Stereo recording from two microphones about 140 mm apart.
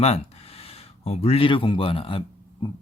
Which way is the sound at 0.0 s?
45° left (ahead or behind).